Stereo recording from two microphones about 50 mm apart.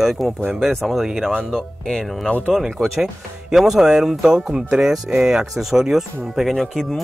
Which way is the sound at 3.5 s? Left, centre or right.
Centre.